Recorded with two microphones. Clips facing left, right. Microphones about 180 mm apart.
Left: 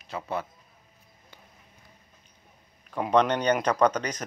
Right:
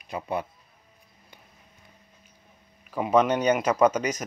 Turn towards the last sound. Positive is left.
turn(degrees=-10)  # may be behind; listen again after turning